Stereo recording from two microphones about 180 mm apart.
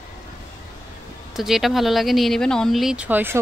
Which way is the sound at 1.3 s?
Centre (ahead or behind).